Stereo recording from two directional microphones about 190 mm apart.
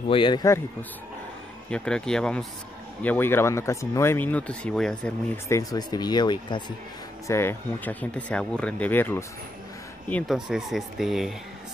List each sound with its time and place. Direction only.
0.1 s speech: 25° left (ahead or behind)
1.7 s speech: 5° left (ahead or behind); by 6.6 s 25° left (ahead or behind)
7.2 s speech: 15° left (ahead or behind)